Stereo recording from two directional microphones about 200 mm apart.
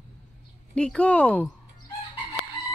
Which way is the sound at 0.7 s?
5° left (ahead or behind).